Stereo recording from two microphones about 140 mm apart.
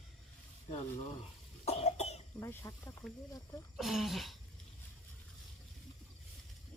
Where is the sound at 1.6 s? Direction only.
50° left (ahead or behind).